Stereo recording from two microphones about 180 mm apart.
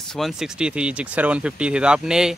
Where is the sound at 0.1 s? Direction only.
Centre (ahead or behind).